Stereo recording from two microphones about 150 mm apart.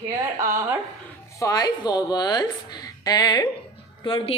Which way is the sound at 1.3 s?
25° left (ahead or behind).